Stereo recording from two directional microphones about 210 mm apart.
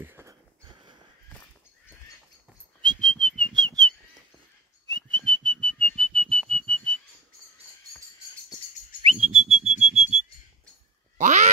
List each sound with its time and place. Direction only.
0.0 s a sound: 10° right (ahead or behind)
2.8 s whistling: 20° right (ahead or behind)
5.3 s whistling: 20° right (ahead or behind)
6.5 s whistle: 25° right (ahead or behind)
9.2 s whistle: 30° right (ahead or behind)
11.1 s quack: 35° right (ahead or behind)